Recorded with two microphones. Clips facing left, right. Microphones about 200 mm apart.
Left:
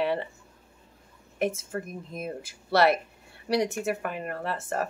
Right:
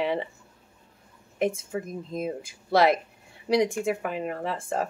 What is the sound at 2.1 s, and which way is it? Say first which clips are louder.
Speech: right 6 dB; 20° right (ahead or behind).